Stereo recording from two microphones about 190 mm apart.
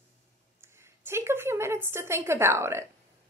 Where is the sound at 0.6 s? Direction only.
15° right (ahead or behind).